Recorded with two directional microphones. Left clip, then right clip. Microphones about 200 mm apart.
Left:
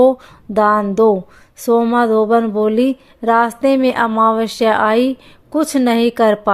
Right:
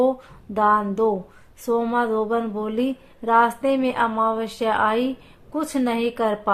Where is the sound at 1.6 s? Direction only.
40° left (ahead or behind).